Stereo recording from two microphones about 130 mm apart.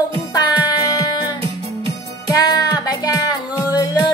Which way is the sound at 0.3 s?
30° left (ahead or behind).